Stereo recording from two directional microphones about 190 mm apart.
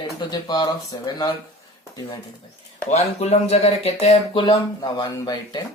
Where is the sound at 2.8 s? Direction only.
35° left (ahead or behind).